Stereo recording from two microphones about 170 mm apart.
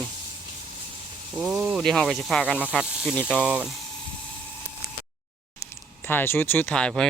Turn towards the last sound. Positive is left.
turn(degrees=5)  # may be behind; listen again after turning